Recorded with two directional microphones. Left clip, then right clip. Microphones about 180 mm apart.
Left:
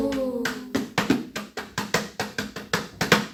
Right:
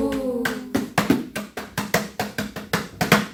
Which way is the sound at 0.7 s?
40° right (ahead or behind).